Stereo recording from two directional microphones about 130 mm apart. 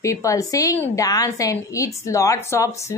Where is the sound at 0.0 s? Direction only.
25° left (ahead or behind).